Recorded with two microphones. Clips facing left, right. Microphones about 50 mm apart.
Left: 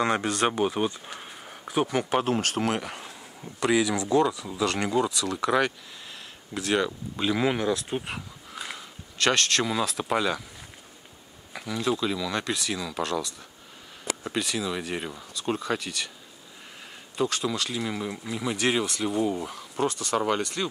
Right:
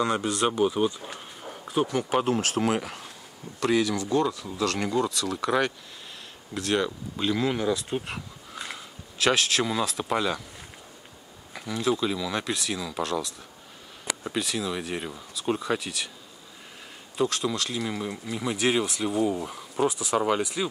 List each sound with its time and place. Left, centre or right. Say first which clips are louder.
0.0 s speech: left 1 dB; left
1.0 s a sound: right 2 dB; centre
1.8 s speech: even; centre
2.0 s speech: even; centre
7.3 s speech: left 2 dB; centre
7.6 s speech: even; centre
11.5 s speech: right 1 dB; centre
17.2 s speech: right 1 dB; centre